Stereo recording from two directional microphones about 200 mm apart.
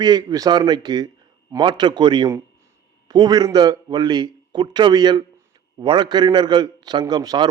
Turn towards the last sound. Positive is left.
turn(degrees=-20)  # may be behind; listen again after turning